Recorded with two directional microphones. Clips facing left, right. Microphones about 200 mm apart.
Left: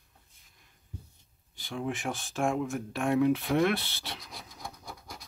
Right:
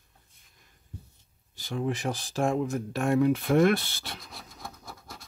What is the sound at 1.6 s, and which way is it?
Speech, 40° right (ahead or behind).